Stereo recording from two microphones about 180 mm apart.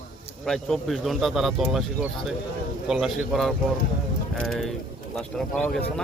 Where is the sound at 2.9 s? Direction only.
Centre (ahead or behind).